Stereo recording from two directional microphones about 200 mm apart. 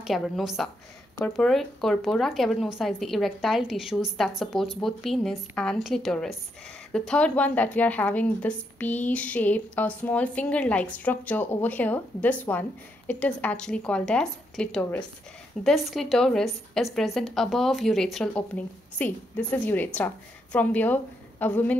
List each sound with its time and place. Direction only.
0.0 s a woman's voice: centre (ahead or behind)